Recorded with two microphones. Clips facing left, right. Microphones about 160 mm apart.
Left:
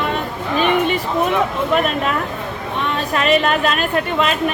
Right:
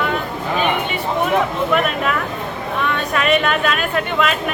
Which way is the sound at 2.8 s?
30° left (ahead or behind).